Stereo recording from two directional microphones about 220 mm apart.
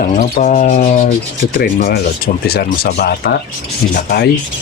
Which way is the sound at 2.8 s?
45° left (ahead or behind).